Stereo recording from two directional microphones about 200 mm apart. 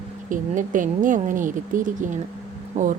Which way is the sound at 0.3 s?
40° right (ahead or behind).